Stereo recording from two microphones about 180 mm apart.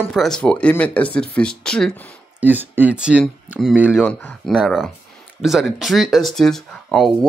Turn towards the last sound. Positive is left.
turn(degrees=0)  # may be behind; listen again after turning